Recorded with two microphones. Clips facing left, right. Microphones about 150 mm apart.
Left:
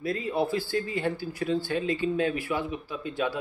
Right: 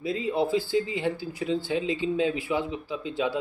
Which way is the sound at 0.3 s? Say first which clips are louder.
Right 3 dB; 20° right (ahead or behind).